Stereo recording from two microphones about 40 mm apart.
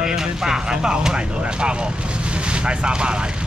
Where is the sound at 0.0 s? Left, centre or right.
Centre.